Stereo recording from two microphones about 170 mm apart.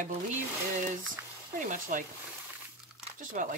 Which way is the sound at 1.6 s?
50° right (ahead or behind).